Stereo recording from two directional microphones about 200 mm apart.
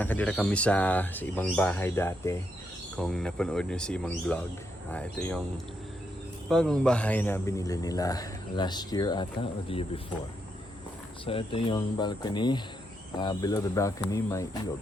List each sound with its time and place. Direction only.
0.0 s a man's voice: 10° left (ahead or behind)
6.5 s a man's voice: 5° left (ahead or behind); by 10.0 s 25° left (ahead or behind)
11.3 s a man's voice: 25° left (ahead or behind)